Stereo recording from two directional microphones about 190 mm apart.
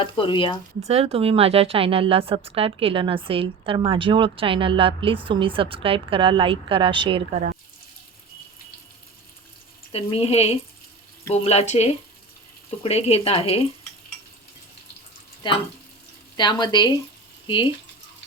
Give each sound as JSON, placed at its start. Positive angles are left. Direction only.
{"t": 0.0, "sound": "speech", "side_deg": 25}
{"t": 0.9, "sound": "speech", "side_deg": -35}
{"t": 9.9, "sound": "speech", "side_deg": 30}
{"t": 15.4, "sound": "speech", "side_deg": 25}